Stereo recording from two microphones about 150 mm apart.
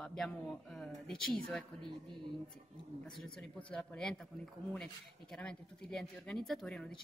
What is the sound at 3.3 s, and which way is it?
Speech, 5° left (ahead or behind).